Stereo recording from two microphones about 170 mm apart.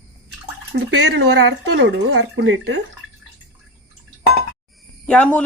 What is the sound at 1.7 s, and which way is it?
Speech, 90° right.